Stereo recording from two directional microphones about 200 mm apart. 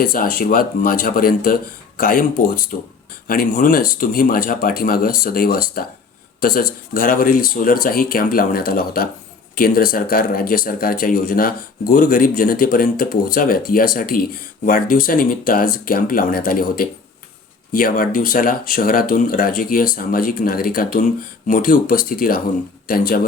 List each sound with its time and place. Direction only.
0.0 s speech: 45° left (ahead or behind)